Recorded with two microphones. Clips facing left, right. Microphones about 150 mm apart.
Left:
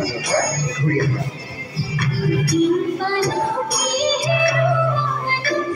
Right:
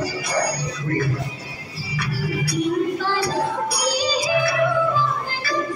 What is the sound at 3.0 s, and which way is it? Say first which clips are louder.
Speech: left 3 dB; 60° left (ahead or behind).